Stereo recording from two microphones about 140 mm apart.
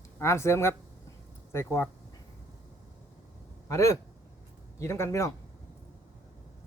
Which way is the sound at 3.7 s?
20° left (ahead or behind).